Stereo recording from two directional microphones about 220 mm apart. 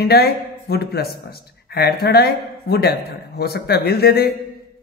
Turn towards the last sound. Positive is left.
turn(degrees=45)  # may be behind; listen again after turning